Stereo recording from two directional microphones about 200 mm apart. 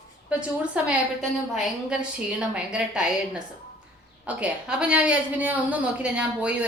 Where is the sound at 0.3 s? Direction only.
5° right (ahead or behind).